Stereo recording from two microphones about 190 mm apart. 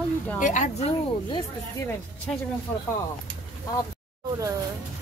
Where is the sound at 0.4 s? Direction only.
40° left (ahead or behind).